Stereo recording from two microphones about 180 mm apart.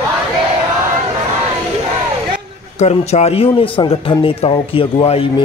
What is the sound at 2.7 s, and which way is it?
A man's voice, 40° left (ahead or behind).